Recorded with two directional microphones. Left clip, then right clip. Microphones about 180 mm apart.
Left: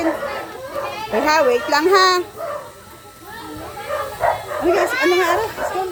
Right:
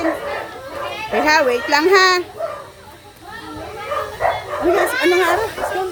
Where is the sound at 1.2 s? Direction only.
10° right (ahead or behind).